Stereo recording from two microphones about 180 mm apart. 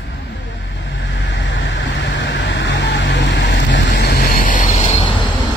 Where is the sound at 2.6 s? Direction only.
80° left.